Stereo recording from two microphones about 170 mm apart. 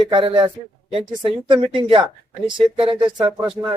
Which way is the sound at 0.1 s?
30° right (ahead or behind).